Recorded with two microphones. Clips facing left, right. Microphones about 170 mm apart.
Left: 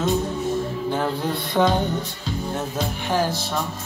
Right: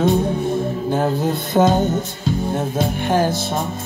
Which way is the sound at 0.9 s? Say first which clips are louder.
Right 6 dB; 45° right (ahead or behind).